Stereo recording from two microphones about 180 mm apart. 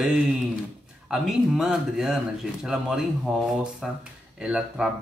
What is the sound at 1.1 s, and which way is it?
Speech, 5° right (ahead or behind).